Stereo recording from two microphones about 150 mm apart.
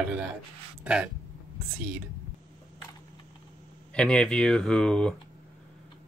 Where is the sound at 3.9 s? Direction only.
5° left (ahead or behind).